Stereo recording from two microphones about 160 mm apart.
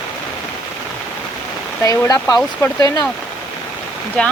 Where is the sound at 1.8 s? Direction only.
20° left (ahead or behind).